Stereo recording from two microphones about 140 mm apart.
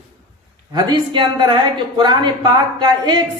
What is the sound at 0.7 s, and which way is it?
A woman's voice, 35° right (ahead or behind).